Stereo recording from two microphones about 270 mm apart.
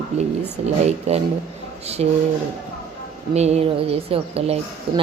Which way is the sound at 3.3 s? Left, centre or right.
Right.